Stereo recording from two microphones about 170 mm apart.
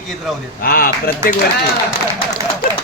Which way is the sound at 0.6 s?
60° left (ahead or behind).